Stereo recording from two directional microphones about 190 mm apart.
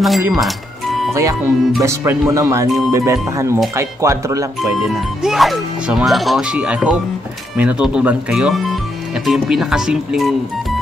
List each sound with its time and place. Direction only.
0.3 s speech: centre (ahead or behind)
1.1 s speech: 15° right (ahead or behind)
5.2 s speech: centre (ahead or behind)